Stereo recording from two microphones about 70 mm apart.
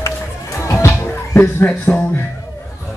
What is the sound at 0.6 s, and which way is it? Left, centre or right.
Music, left.